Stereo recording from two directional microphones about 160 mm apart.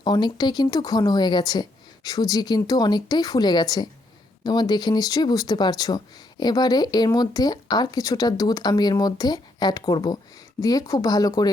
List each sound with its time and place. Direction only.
0.0 s speech: 25° left (ahead or behind)